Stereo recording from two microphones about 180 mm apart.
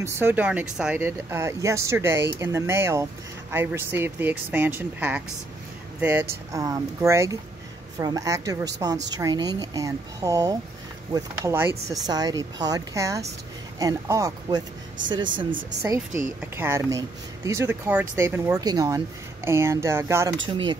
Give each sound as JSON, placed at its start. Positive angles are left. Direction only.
{"t": 0.0, "sound": "speech", "side_deg": -15}
{"t": 16.3, "sound": "speech", "side_deg": -15}
{"t": 20.4, "sound": "speech", "side_deg": -30}